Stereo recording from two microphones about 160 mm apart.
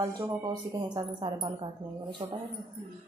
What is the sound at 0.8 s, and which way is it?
Speech, 30° right (ahead or behind).